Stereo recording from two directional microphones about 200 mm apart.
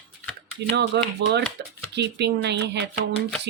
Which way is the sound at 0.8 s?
60° right (ahead or behind).